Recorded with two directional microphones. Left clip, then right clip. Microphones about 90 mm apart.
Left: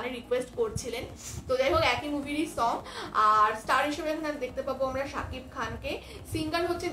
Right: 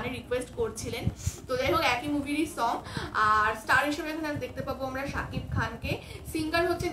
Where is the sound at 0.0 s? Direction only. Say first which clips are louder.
Left 1 dB; 30° right (ahead or behind).